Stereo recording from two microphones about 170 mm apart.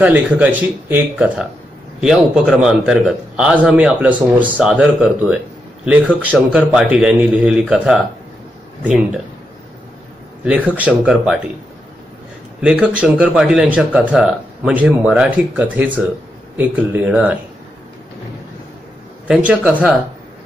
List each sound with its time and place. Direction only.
0.0 s a man's voice: 10° right (ahead or behind)
10.4 s speech: 10° right (ahead or behind)
12.6 s a man's voice: 5° right (ahead or behind)
19.2 s a man's voice: 5° right (ahead or behind)